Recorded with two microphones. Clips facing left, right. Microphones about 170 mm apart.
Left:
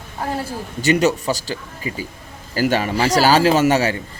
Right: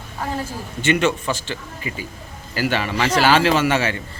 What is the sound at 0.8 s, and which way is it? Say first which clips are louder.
A man's voice: left 2 dB; 40° left (ahead or behind).